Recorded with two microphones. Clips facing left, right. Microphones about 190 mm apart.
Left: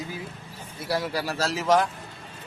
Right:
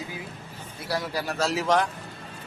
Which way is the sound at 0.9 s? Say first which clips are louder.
Left 2 dB; 25° left (ahead or behind).